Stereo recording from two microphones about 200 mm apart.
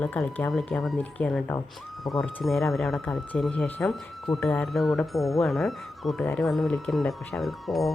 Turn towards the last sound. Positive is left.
turn(degrees=0)  # may be behind; listen again after turning